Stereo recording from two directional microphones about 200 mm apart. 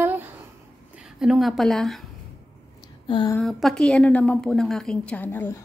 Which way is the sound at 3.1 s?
20° left (ahead or behind).